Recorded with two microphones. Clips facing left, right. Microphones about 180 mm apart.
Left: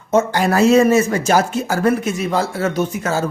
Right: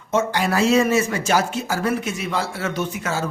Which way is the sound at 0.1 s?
45° left (ahead or behind).